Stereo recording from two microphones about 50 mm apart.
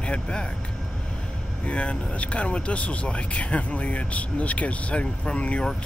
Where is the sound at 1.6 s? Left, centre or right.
Left.